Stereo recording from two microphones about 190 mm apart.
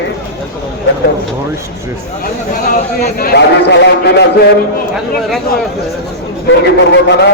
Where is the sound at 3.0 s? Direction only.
55° left (ahead or behind).